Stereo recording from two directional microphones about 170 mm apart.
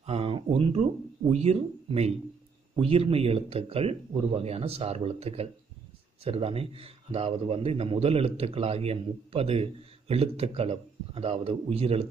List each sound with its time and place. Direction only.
0.0 s a man's voice: 35° right (ahead or behind)